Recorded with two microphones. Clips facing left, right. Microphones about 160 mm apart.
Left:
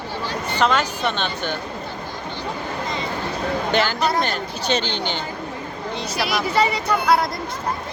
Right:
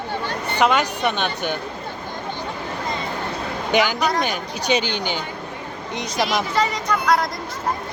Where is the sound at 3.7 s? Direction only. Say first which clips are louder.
Right 3 dB; 15° right (ahead or behind).